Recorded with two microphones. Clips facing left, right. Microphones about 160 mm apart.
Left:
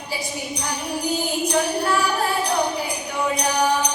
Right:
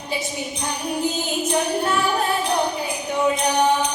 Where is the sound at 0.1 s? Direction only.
20° right (ahead or behind).